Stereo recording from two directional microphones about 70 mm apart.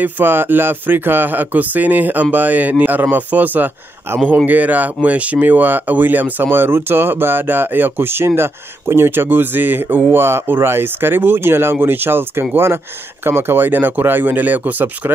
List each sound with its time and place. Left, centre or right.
0.0 s speech: right